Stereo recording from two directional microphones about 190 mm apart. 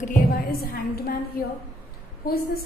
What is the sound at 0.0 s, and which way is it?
A woman's voice, 45° left (ahead or behind).